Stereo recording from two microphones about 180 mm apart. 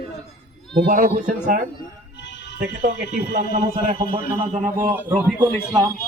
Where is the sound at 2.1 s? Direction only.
75° left (ahead or behind).